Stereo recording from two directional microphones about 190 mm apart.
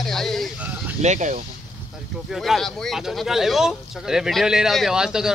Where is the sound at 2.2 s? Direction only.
Centre (ahead or behind).